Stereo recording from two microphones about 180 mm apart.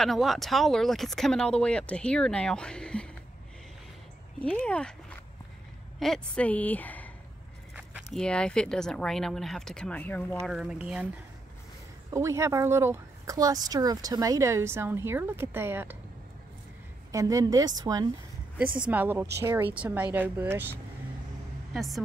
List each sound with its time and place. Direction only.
0.0 s speech: centre (ahead or behind)
4.4 s a woman's voice: 5° left (ahead or behind)
5.9 s a woman's voice: 5° left (ahead or behind)
7.7 s a sound: 5° right (ahead or behind)
8.2 s speech: 5° left (ahead or behind)
10.5 s speech: 5° right (ahead or behind)
12.1 s speech: 15° right (ahead or behind)
17.1 s a woman's voice: 20° right (ahead or behind)
18.8 s speech: 10° right (ahead or behind)
21.7 s speech: centre (ahead or behind)